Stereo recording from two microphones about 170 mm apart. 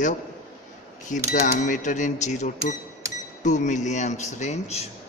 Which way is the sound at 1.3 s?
50° left (ahead or behind).